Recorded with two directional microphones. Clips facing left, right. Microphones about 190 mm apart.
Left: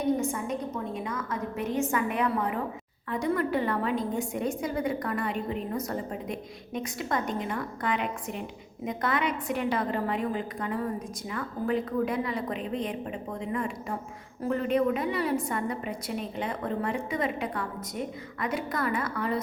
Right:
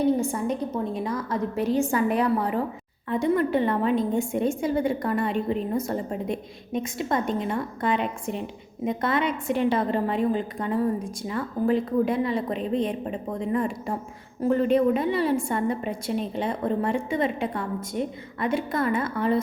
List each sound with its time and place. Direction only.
0.0 s a woman's voice: 35° right (ahead or behind)